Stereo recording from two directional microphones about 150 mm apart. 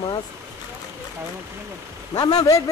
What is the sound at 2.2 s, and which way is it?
Speech, 25° left (ahead or behind).